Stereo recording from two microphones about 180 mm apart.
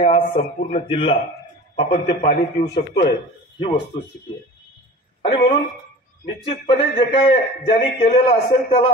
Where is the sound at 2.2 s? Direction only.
60° left (ahead or behind).